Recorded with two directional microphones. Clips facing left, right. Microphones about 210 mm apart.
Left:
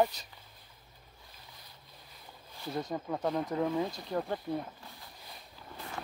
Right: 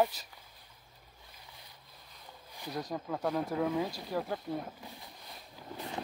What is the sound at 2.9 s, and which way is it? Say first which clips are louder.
Speech: even; 5° left (ahead or behind).